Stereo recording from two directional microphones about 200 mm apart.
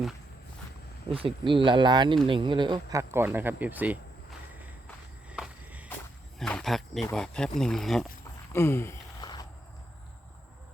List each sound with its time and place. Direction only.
1.1 s speech: 25° right (ahead or behind); by 3.9 s 10° right (ahead or behind)
5.3 s walk: 5° right (ahead or behind)
6.4 s speech: 5° left (ahead or behind)
8.5 s a sound: 10° left (ahead or behind)